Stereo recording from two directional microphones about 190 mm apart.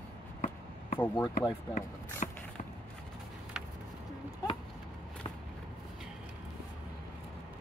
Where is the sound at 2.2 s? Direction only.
40° left (ahead or behind).